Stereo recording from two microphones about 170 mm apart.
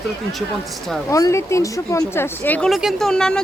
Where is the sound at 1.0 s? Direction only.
20° left (ahead or behind).